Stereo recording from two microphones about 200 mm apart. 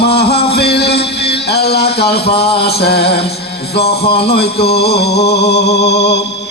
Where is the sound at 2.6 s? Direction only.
55° left (ahead or behind).